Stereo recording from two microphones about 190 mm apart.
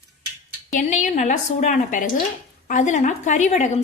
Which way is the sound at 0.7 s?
40° left (ahead or behind).